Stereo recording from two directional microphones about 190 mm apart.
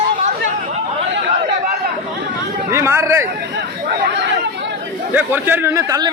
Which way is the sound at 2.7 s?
15° right (ahead or behind).